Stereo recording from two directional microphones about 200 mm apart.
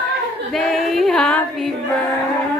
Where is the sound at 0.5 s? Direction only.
Centre (ahead or behind).